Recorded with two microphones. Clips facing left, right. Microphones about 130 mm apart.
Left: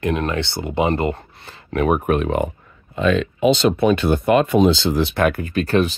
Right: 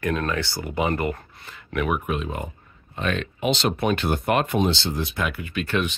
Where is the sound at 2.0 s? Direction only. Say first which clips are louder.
Left 9 dB; 65° left (ahead or behind).